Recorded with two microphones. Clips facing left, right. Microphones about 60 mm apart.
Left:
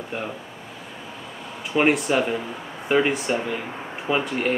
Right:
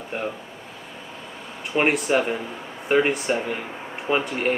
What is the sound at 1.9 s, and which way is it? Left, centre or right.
Speech, centre.